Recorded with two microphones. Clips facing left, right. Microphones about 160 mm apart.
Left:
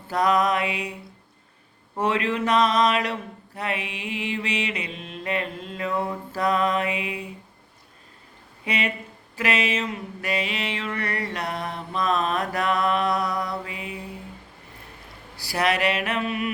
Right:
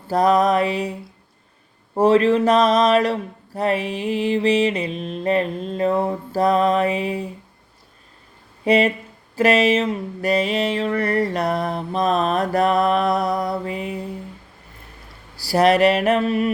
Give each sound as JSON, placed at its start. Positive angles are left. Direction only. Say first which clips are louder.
{"t": 0.1, "sound": "mantra", "louder": "right 5 dB", "side_deg": -35}
{"t": 2.0, "sound": "mantra", "louder": "right 9 dB", "side_deg": -35}
{"t": 8.6, "sound": "speech", "louder": "right 11 dB", "side_deg": -35}
{"t": 9.3, "sound": "mantra", "louder": "right 9 dB", "side_deg": -40}
{"t": 15.4, "sound": "mantra", "louder": "right 9 dB", "side_deg": -35}